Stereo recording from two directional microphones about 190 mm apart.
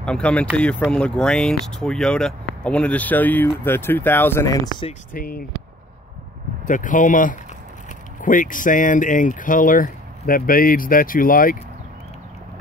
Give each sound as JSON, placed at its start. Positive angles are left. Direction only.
{"t": 0.0, "sound": "speech", "side_deg": 5}
{"t": 5.1, "sound": "speech", "side_deg": 50}
{"t": 6.6, "sound": "speech", "side_deg": 45}